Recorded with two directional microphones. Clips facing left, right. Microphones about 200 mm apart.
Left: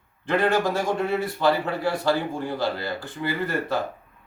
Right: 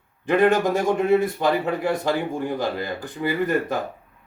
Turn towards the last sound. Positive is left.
turn(degrees=-15)  # may be behind; listen again after turning